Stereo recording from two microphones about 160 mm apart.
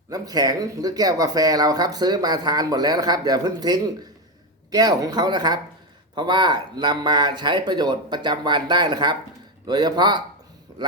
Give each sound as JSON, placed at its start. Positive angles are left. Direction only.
{"t": 0.1, "sound": "speech", "side_deg": -25}